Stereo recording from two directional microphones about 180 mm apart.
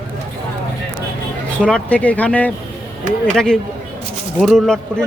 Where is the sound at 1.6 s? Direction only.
5° left (ahead or behind).